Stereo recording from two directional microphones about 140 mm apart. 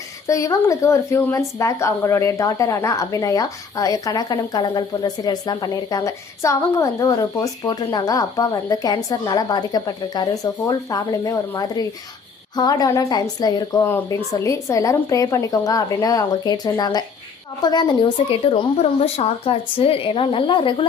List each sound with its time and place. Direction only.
0.3 s a woman's voice: 25° left (ahead or behind)